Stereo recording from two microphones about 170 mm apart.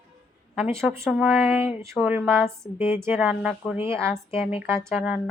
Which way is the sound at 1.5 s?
15° right (ahead or behind).